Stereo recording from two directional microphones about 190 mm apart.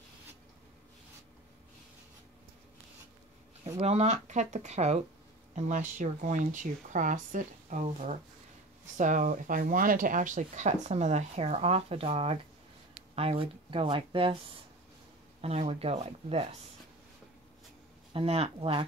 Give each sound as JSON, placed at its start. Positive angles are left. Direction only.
{"t": 3.6, "sound": "speech", "side_deg": -35}
{"t": 15.4, "sound": "speech", "side_deg": -30}
{"t": 18.1, "sound": "speech", "side_deg": -30}